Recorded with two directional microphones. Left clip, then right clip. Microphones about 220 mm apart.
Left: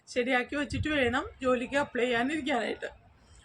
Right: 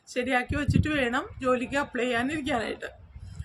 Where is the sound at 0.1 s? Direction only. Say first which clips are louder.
Right 1 dB; 20° right (ahead or behind).